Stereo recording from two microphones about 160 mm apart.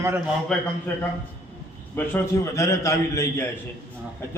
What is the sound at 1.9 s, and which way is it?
A man's voice, 15° left (ahead or behind).